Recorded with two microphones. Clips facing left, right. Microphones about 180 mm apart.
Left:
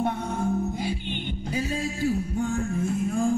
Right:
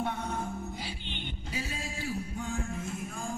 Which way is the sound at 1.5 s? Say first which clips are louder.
Left 10 dB; 45° left (ahead or behind).